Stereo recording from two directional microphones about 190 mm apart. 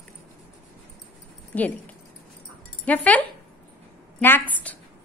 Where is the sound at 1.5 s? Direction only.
10° left (ahead or behind).